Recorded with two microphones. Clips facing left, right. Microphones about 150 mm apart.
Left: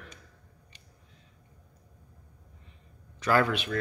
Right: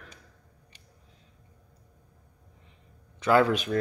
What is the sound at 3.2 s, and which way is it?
Speech, 20° right (ahead or behind).